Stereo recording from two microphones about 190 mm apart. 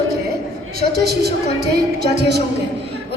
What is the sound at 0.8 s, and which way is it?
A woman's voice, 55° right (ahead or behind).